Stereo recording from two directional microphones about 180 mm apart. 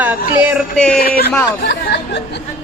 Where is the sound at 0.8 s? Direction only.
5° left (ahead or behind).